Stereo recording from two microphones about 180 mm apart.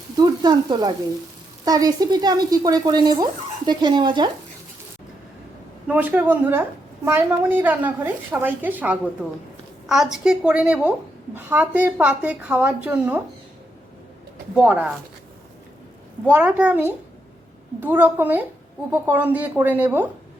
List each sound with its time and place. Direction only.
0.2 s speech: 20° right (ahead or behind)
5.9 s a woman's voice: 10° right (ahead or behind)
14.5 s a woman's voice: 10° right (ahead or behind)
16.3 s a woman's voice: 10° right (ahead or behind)